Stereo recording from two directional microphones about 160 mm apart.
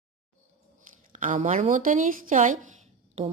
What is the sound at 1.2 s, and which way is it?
A woman's voice, 50° right (ahead or behind).